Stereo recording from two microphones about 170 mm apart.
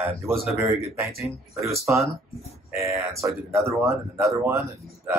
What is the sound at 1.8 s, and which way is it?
A man's voice, 15° right (ahead or behind).